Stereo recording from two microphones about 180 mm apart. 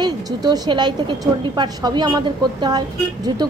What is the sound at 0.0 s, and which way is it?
Speech, 25° right (ahead or behind).